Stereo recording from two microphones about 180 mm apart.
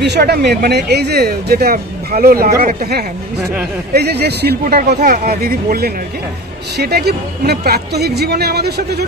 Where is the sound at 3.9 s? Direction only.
65° right (ahead or behind).